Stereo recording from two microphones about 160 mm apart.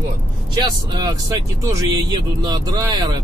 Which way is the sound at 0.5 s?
25° right (ahead or behind).